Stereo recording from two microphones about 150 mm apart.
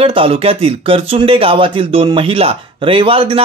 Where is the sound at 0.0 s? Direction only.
35° right (ahead or behind).